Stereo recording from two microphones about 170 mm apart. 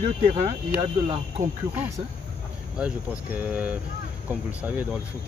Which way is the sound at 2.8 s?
5° right (ahead or behind).